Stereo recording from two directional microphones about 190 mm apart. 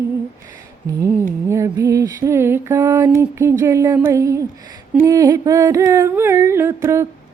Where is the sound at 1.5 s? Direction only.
15° right (ahead or behind).